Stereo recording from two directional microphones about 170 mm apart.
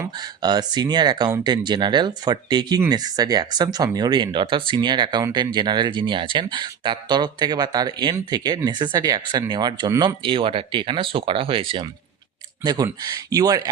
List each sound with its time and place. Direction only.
0.0 s speech: 25° right (ahead or behind)